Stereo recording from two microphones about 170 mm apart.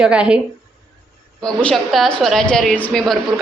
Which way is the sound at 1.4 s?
5° left (ahead or behind).